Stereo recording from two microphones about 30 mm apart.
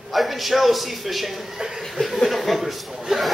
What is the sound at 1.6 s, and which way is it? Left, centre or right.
Chuckle, right.